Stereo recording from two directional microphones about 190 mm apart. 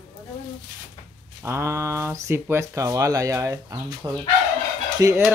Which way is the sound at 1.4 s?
15° right (ahead or behind).